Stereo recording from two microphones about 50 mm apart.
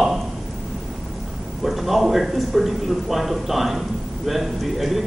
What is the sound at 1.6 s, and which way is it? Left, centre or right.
Speech, centre.